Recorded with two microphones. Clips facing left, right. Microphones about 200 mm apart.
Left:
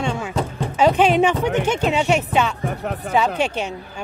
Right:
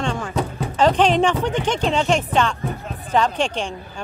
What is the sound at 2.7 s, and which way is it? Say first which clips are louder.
Music: left 4 dB; 70° left (ahead or behind).